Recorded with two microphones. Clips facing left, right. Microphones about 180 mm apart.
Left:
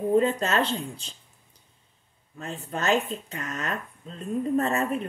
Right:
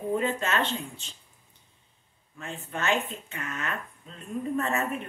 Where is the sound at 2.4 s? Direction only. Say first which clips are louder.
Left 2 dB; 35° left (ahead or behind).